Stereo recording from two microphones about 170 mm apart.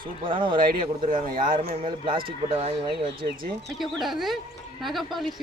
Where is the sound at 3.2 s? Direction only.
45° right (ahead or behind).